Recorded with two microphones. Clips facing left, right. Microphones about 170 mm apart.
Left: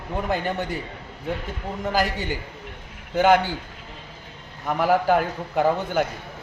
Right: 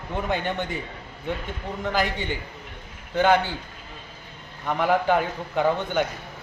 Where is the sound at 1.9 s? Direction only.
5° left (ahead or behind).